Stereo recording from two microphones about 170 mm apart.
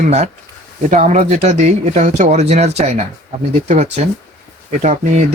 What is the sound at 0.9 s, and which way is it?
Speech, 45° right (ahead or behind).